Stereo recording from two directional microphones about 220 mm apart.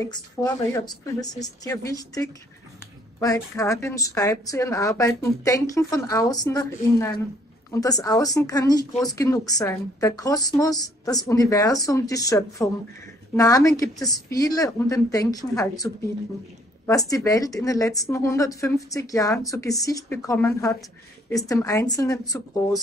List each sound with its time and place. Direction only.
0.0 s a woman's voice: 15° left (ahead or behind)